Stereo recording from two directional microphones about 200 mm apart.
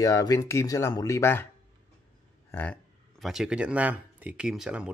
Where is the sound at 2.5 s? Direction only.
10° left (ahead or behind).